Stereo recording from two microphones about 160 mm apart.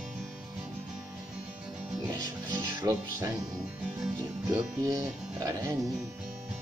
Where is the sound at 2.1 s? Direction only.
25° right (ahead or behind).